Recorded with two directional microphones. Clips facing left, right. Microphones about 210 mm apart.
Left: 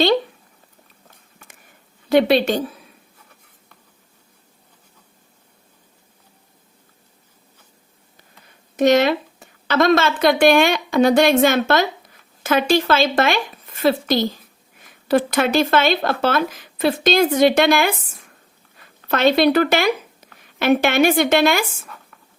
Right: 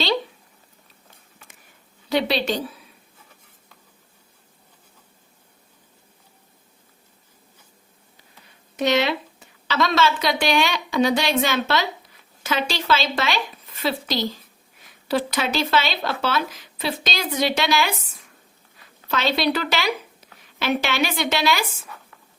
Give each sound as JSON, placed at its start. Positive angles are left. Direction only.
{"t": 2.0, "sound": "a woman's voice", "side_deg": 50}
{"t": 8.7, "sound": "a woman's voice", "side_deg": 50}
{"t": 19.0, "sound": "a woman's voice", "side_deg": 55}